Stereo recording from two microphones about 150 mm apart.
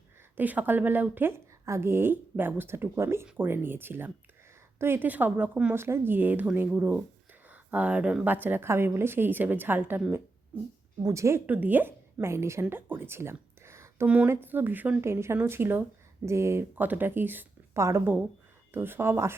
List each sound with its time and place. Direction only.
0.3 s a woman's voice: 10° right (ahead or behind)